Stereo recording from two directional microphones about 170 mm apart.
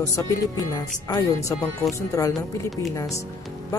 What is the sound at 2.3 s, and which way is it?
Speech, centre (ahead or behind).